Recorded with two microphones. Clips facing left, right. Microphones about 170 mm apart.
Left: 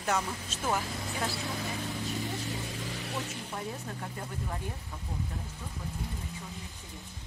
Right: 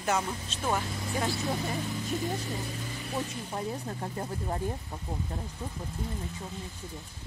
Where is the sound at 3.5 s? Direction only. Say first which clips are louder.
Right 5 dB; 30° right (ahead or behind).